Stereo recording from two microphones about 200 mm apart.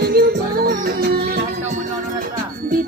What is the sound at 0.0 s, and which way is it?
Music, 50° right (ahead or behind).